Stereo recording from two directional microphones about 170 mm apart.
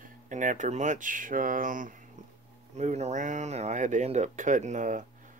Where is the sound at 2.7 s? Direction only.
40° right (ahead or behind).